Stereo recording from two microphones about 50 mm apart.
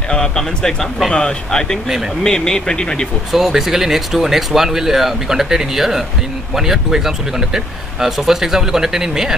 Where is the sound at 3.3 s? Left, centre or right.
Centre.